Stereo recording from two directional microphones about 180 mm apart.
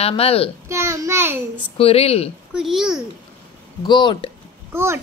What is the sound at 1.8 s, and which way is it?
Speech, 35° left (ahead or behind).